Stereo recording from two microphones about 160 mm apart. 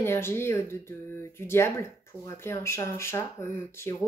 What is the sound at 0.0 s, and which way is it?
Speech, 15° left (ahead or behind).